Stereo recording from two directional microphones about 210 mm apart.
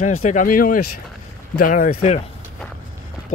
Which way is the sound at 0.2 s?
35° left (ahead or behind).